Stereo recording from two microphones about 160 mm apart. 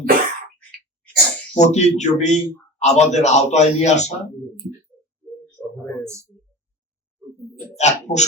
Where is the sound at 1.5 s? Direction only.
45° left (ahead or behind).